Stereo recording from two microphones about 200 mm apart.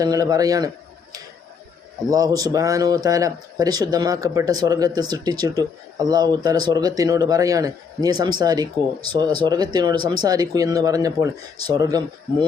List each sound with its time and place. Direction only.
0.0 s speech: 20° right (ahead or behind)
2.0 s speech: 15° right (ahead or behind)